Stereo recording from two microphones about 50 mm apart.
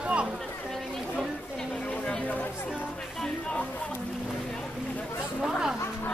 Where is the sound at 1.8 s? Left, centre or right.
Left.